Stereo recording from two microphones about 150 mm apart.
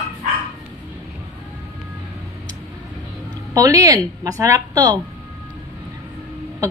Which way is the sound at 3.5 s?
25° right (ahead or behind).